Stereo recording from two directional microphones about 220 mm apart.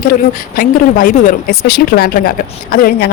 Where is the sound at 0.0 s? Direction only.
40° left (ahead or behind).